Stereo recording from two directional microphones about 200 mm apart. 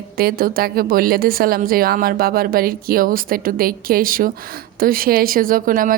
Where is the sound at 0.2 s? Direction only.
50° right (ahead or behind).